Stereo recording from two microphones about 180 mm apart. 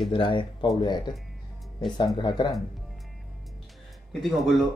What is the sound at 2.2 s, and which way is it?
Speech, 25° left (ahead or behind).